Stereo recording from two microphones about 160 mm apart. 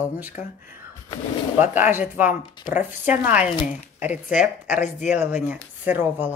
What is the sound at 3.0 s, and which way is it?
Speech, 10° right (ahead or behind).